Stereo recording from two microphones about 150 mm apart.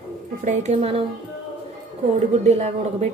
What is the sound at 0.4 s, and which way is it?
Speech, 45° right (ahead or behind).